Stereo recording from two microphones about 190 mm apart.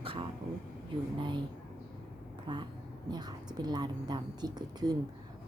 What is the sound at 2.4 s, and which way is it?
Speech, 25° right (ahead or behind).